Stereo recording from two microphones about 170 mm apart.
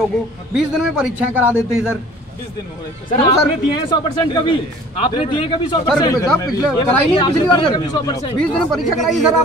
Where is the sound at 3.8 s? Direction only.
30° left (ahead or behind).